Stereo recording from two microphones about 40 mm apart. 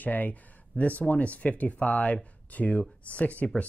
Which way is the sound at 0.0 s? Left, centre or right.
Left.